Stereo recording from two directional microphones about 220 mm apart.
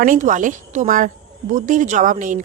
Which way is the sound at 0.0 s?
35° right (ahead or behind).